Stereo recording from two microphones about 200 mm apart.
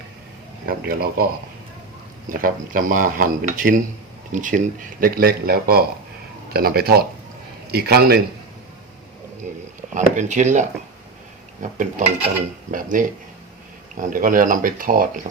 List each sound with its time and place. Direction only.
0.6 s speech: 50° right (ahead or behind)
2.3 s speech: 40° right (ahead or behind)
9.9 s speech: 40° right (ahead or behind)